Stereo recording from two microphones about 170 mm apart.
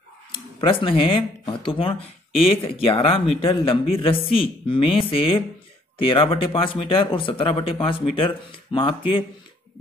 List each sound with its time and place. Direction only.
0.3 s speech: 30° left (ahead or behind)